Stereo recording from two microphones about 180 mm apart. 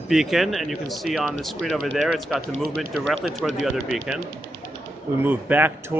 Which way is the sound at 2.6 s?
55° right (ahead or behind).